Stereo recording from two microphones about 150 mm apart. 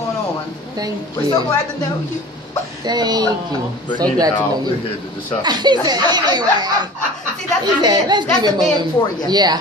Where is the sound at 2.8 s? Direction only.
30° right (ahead or behind).